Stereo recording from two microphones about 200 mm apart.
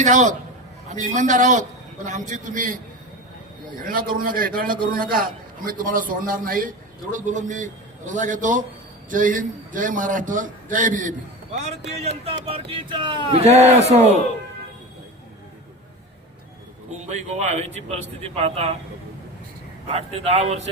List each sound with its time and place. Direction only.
0.0 s speech: 35° right (ahead or behind)
3.8 s a man's voice: 45° right (ahead or behind)
17.1 s speech: 35° right (ahead or behind)
19.9 s speech: 30° right (ahead or behind)